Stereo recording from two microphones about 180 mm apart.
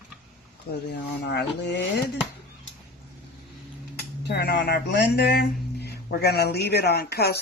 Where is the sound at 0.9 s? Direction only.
70° left (ahead or behind).